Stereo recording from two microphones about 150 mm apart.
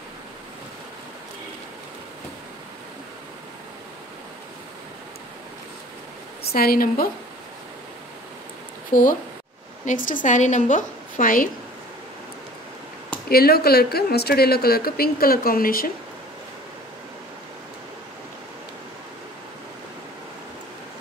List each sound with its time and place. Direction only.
6.5 s speech: 85° left
8.9 s a woman's voice: 65° left (ahead or behind)
13.3 s speech: 90° left; by 15.9 s 75° left (ahead or behind)